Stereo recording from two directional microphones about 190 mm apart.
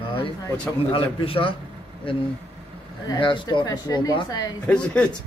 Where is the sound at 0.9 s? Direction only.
30° left (ahead or behind).